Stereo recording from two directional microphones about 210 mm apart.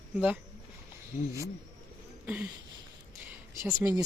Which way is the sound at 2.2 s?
5° right (ahead or behind).